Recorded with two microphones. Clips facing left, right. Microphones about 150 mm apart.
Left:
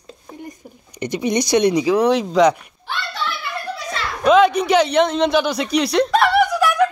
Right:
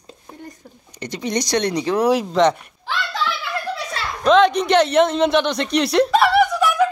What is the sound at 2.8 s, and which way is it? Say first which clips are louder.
Hands: right 2 dB; 90° right.